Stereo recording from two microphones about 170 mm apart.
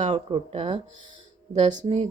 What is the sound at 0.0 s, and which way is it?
Speech, 35° right (ahead or behind).